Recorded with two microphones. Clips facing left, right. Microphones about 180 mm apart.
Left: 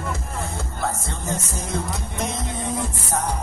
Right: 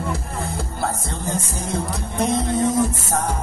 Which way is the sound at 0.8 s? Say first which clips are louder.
Even; 30° right (ahead or behind).